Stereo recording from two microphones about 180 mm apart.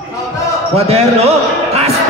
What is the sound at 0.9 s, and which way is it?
A man's voice, 35° right (ahead or behind).